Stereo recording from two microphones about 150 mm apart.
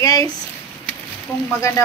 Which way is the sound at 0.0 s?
25° left (ahead or behind).